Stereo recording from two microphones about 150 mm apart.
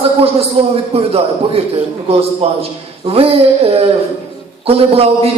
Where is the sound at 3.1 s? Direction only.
40° right (ahead or behind).